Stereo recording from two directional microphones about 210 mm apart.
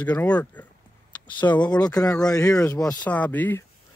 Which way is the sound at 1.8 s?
15° left (ahead or behind).